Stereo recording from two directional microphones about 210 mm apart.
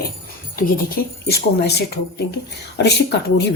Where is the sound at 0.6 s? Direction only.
45° left (ahead or behind).